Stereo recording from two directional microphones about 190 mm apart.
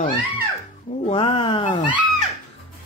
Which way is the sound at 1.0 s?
30° left (ahead or behind).